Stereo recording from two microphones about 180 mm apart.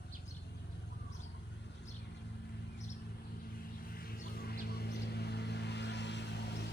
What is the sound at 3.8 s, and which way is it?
Vehicle, 55° left (ahead or behind).